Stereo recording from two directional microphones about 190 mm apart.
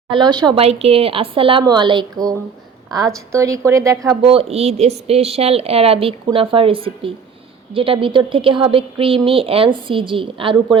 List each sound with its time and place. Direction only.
0.1 s a woman's voice: 20° right (ahead or behind)
4.2 s a woman's voice: 30° right (ahead or behind)